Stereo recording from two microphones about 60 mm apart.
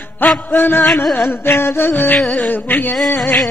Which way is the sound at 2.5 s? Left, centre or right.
Left.